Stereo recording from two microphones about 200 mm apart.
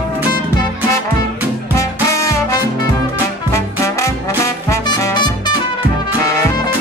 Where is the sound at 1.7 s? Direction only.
15° left (ahead or behind).